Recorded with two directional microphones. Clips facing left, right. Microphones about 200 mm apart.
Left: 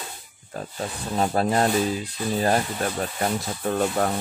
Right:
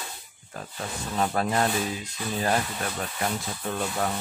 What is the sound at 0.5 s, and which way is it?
Speech, 35° left (ahead or behind).